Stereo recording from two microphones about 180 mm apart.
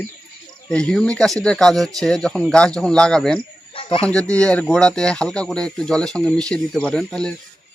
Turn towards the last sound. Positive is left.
turn(degrees=5)  # may be behind; listen again after turning